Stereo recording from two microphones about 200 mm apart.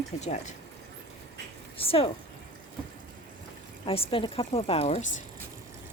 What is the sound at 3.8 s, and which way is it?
A woman's voice, 25° left (ahead or behind).